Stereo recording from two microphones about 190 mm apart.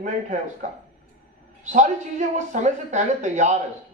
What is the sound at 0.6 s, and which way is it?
A man's voice, 40° right (ahead or behind).